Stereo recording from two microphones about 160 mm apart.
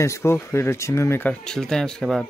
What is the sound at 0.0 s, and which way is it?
A man's voice, 15° left (ahead or behind).